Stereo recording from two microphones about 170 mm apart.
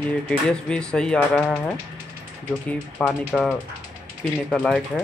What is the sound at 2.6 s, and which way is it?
Speech, 10° left (ahead or behind).